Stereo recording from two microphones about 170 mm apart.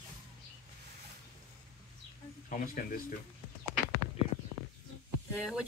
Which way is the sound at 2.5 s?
50° left (ahead or behind).